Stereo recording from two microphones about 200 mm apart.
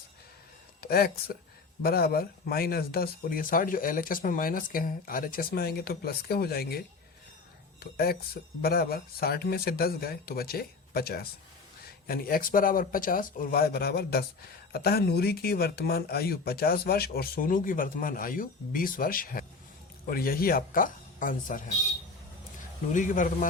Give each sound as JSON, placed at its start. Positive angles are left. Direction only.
{"t": 0.8, "sound": "speech", "side_deg": 50}
{"t": 22.9, "sound": "a man's voice", "side_deg": 40}